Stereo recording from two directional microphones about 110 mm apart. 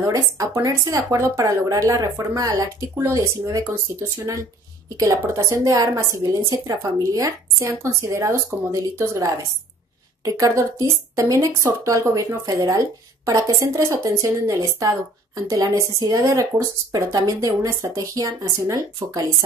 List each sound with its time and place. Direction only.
0.0 s speech: 35° right (ahead or behind)
4.8 s speech: 30° right (ahead or behind)